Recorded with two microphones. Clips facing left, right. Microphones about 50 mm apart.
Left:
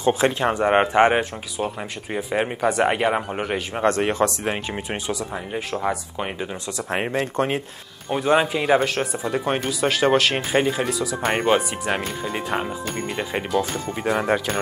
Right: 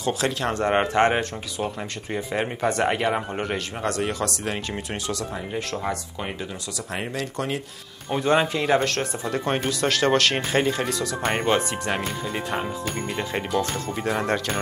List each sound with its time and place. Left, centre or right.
0.0 s a man's voice: left
3.8 s speech: left
5.0 s a man's voice: centre
6.9 s speech: left
8.1 s a man's voice: centre